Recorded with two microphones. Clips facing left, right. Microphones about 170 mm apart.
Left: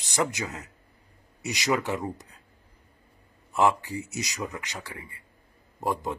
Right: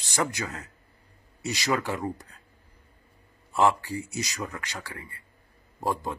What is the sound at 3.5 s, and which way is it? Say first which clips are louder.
Speech: even; 20° left (ahead or behind).